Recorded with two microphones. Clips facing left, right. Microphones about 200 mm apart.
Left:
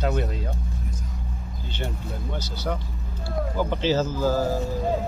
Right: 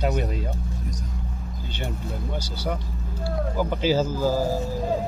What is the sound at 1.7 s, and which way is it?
Speech, 15° right (ahead or behind).